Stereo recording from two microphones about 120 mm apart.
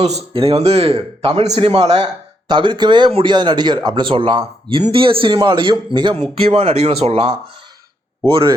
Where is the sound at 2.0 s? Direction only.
40° right (ahead or behind).